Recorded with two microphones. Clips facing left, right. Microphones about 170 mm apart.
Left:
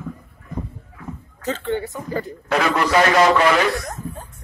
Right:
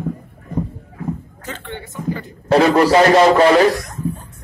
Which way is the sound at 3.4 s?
30° right (ahead or behind).